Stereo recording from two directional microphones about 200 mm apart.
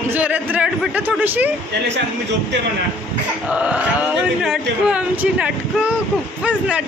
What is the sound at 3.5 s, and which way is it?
Speech, 5° right (ahead or behind).